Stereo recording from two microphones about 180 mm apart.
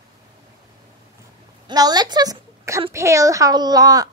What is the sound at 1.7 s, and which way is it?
A woman's voice, 20° right (ahead or behind).